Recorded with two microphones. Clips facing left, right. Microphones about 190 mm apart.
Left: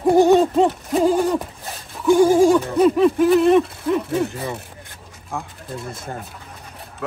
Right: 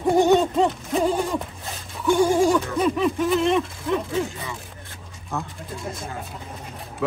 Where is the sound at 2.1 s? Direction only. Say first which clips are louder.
Left 5 dB; centre (ahead or behind).